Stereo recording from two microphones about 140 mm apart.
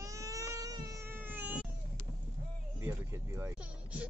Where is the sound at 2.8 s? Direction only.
15° right (ahead or behind).